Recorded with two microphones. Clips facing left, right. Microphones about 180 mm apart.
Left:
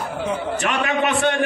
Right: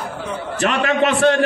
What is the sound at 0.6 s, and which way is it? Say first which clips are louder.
Speech: right 7 dB; 35° right (ahead or behind).